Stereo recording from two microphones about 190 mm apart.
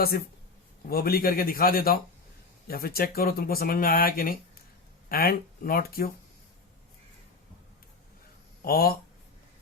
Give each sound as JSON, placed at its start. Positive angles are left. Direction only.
{"t": 0.9, "sound": "speech", "side_deg": 55}
{"t": 8.6, "sound": "speech", "side_deg": 55}